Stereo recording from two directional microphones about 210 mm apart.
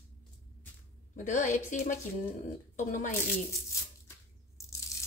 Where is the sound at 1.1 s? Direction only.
35° left (ahead or behind).